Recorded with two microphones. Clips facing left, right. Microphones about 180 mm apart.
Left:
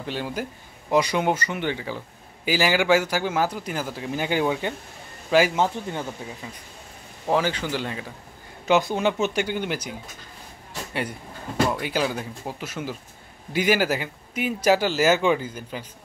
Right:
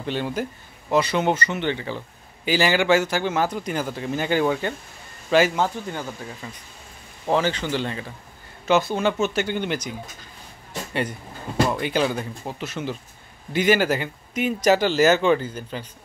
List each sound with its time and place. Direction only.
0.0 s speech: 10° left (ahead or behind)
5.6 s speech: 25° left (ahead or behind)
6.4 s speech: 10° left (ahead or behind)